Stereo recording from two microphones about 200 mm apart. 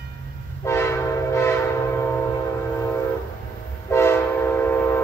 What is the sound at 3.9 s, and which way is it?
Train, 10° left (ahead or behind).